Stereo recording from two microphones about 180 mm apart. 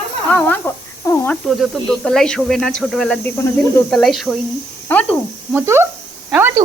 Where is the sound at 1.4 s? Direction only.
Centre (ahead or behind).